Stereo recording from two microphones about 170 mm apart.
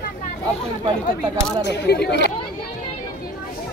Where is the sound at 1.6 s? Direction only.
85° left.